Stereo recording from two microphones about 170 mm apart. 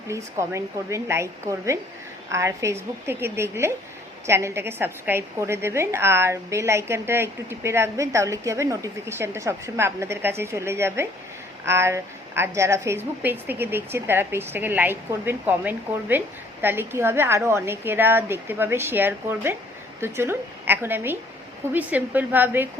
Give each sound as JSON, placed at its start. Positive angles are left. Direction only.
{"t": 0.1, "sound": "a woman's voice", "side_deg": -15}